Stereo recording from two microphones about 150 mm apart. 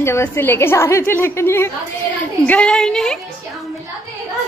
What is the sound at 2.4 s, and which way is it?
Speech, 5° left (ahead or behind).